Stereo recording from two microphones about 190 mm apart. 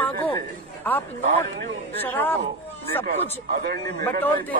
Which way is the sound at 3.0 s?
55° right (ahead or behind).